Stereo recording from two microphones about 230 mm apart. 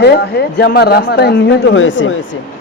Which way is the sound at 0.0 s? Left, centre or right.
Left.